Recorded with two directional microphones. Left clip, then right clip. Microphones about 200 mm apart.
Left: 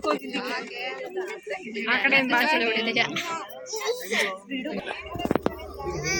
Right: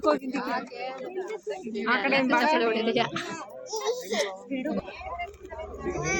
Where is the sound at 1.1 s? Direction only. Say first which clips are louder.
Left 1 dB; 30° right (ahead or behind).